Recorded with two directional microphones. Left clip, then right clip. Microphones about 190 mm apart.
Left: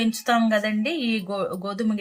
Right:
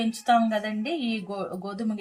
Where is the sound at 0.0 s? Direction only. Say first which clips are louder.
Even; 40° left (ahead or behind).